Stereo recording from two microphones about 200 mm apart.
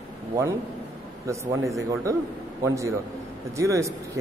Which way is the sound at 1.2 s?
15° right (ahead or behind).